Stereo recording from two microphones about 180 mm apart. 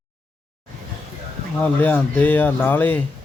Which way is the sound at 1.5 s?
10° left (ahead or behind).